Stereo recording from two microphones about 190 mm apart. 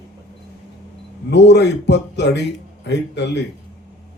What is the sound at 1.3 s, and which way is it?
A man's voice, 65° left (ahead or behind).